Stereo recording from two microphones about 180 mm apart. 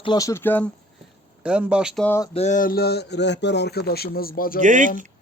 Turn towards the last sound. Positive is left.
turn(degrees=-45)  # may be behind; listen again after turning